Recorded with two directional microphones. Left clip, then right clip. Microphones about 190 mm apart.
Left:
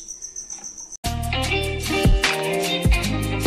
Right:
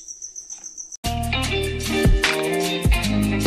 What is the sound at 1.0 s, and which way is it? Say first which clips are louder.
Music: right 1 dB; centre (ahead or behind).